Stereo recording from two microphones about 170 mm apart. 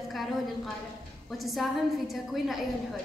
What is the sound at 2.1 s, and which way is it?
Speech, centre (ahead or behind).